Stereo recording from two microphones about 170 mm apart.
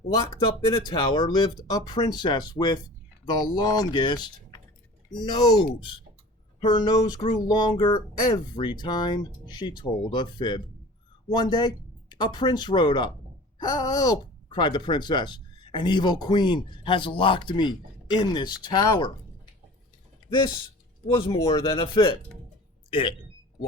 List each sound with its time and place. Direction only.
0.1 s speech: 25° left (ahead or behind)
21.2 s speech: 20° left (ahead or behind)